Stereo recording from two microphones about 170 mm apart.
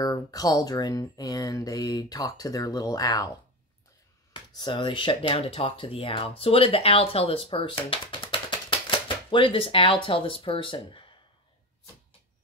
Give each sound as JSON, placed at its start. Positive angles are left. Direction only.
{"t": 0.0, "sound": "speech", "side_deg": 20}
{"t": 4.3, "sound": "speech", "side_deg": 30}